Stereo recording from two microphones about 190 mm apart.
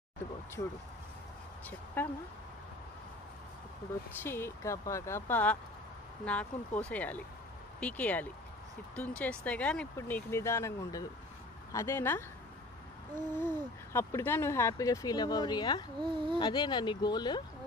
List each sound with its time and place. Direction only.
0.6 s speech: 15° left (ahead or behind)
2.0 s speech: 10° left (ahead or behind)
4.2 s speech: 10° left (ahead or behind)
13.3 s speech: 10° left (ahead or behind)
16.0 s speech: 25° right (ahead or behind)
16.3 s speech: 25° left (ahead or behind)